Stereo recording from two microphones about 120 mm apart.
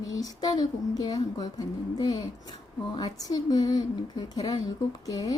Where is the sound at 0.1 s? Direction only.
30° left (ahead or behind).